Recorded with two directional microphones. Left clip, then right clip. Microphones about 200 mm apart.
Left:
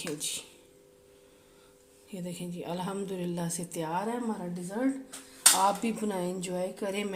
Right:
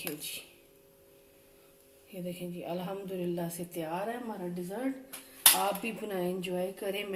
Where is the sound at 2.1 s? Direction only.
55° left (ahead or behind).